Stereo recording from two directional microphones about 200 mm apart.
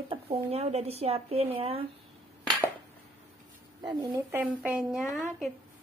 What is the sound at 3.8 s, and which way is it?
Speech, 20° right (ahead or behind).